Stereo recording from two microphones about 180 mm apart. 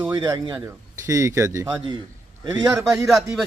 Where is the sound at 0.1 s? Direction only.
25° right (ahead or behind).